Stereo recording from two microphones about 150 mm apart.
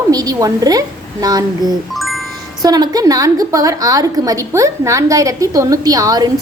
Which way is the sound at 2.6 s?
25° right (ahead or behind).